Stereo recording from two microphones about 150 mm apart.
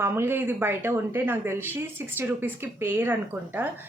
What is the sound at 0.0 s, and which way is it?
Speech, 15° right (ahead or behind).